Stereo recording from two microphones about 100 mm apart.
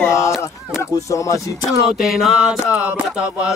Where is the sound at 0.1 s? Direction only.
30° left (ahead or behind).